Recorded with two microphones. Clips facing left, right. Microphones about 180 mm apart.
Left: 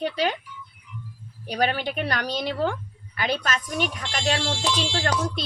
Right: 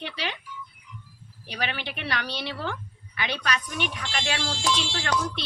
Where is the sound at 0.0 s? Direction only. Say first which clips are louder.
Left 9 dB; 45° left (ahead or behind).